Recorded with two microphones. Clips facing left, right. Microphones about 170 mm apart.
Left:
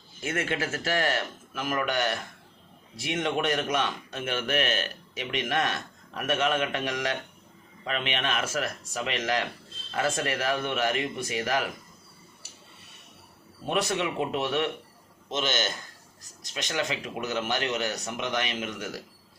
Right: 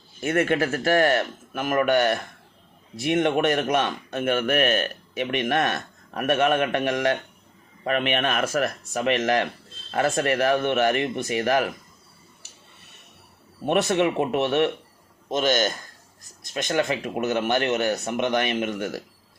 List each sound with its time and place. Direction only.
0.2 s a man's voice: 55° right (ahead or behind)
13.7 s a man's voice: 60° right (ahead or behind)
15.3 s a man's voice: 50° right (ahead or behind)